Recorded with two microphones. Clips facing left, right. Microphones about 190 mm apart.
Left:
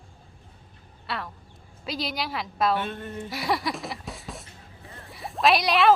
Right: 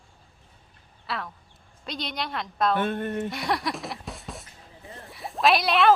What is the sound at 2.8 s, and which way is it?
Speech, 55° right (ahead or behind).